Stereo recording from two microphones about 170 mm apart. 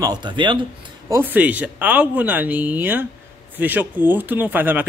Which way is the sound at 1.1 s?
10° right (ahead or behind).